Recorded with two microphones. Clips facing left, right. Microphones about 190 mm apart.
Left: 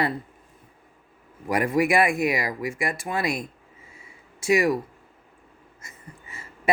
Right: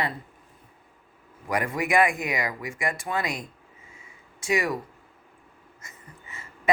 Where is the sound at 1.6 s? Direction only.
25° left (ahead or behind).